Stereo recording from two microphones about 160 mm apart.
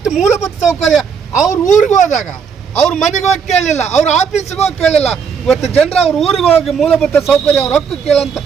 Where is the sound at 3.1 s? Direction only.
45° left (ahead or behind).